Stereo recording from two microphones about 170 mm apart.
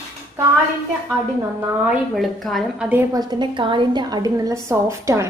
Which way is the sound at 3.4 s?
30° right (ahead or behind).